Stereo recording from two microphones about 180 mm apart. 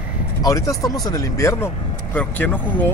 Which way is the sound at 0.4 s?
20° left (ahead or behind).